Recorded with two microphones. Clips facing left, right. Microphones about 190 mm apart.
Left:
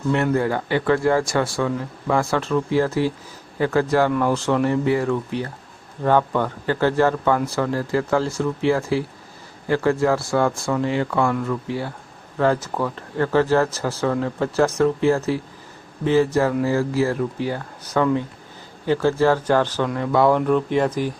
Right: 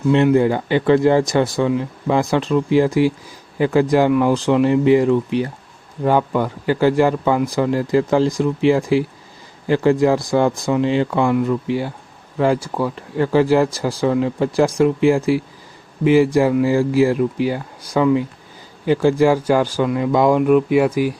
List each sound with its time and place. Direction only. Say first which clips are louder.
0.3 s speech: right 5 dB; 15° right (ahead or behind)